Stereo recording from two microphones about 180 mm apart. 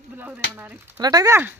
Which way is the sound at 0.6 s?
10° right (ahead or behind).